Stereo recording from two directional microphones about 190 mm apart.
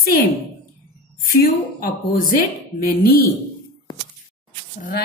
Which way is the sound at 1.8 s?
50° left (ahead or behind).